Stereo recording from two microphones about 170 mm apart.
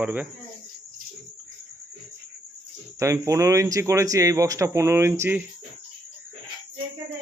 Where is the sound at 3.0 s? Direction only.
20° right (ahead or behind).